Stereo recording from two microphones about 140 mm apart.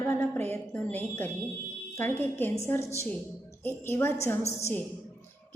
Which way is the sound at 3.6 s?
15° left (ahead or behind).